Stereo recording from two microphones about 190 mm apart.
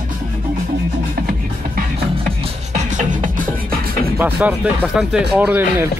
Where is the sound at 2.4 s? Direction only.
40° right (ahead or behind).